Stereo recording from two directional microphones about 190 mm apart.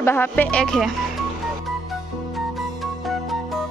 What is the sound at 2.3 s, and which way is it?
Music, centre (ahead or behind).